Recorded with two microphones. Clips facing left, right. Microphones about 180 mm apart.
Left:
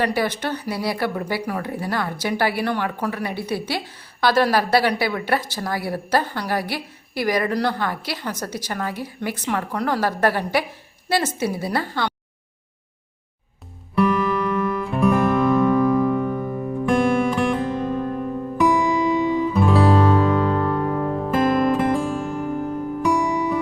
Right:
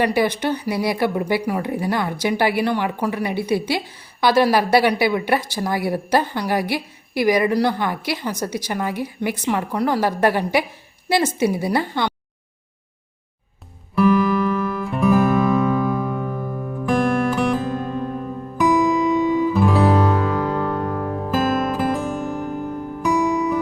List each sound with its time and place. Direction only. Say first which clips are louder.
0.0 s speech: right 3 dB; 15° right (ahead or behind)
13.9 s music: right 3 dB; centre (ahead or behind)